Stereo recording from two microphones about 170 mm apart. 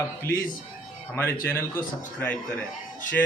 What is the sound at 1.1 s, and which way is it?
Speech, 15° left (ahead or behind).